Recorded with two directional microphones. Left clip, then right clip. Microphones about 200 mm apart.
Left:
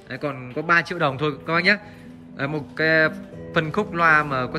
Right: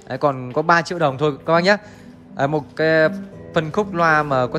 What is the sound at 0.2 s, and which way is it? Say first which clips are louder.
A man's voice: right 10 dB; 20° right (ahead or behind).